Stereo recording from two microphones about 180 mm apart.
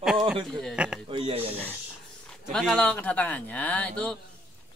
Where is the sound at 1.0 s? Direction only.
30° right (ahead or behind).